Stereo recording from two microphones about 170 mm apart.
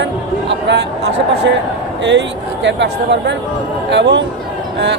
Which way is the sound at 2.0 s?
90° right.